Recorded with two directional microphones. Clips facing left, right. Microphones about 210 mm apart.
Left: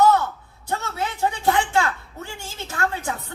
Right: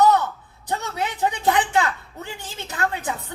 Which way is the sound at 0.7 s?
20° right (ahead or behind).